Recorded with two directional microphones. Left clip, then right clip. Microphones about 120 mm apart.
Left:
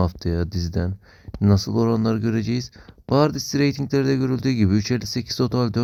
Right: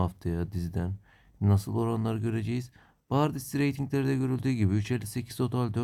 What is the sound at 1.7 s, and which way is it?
Speech, 35° left (ahead or behind).